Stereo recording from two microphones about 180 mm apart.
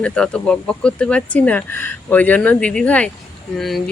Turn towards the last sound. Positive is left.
turn(degrees=0)  # may be behind; listen again after turning